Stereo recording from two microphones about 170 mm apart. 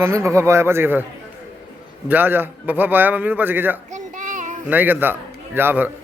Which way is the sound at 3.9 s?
50° right (ahead or behind).